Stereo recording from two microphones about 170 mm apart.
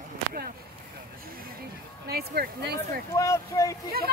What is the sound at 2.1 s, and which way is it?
Speech, 65° right (ahead or behind).